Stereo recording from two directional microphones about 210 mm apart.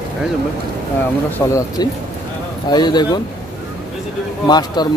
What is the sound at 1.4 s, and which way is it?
Speech, 15° left (ahead or behind).